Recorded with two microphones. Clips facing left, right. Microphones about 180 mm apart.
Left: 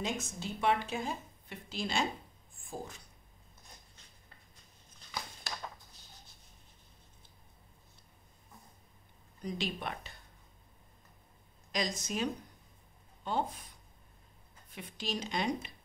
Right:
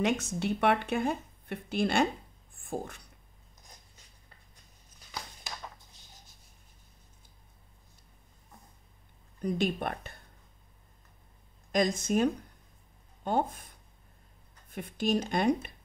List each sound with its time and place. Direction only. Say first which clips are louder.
0.0 s speech: right 8 dB; 70° right (ahead or behind)
2.5 s a sound: right 7 dB; 60° right (ahead or behind)
9.4 s speech: right 8 dB; 55° right (ahead or behind)
11.7 s speech: right 9 dB; 55° right (ahead or behind)
14.7 s speech: right 10 dB; 50° right (ahead or behind)